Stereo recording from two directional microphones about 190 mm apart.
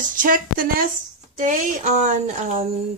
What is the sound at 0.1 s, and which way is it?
Speech, 45° right (ahead or behind).